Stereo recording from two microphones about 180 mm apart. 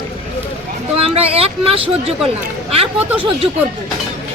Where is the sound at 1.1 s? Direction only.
35° right (ahead or behind).